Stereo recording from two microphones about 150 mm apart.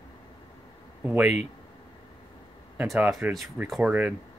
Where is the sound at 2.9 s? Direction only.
5° right (ahead or behind).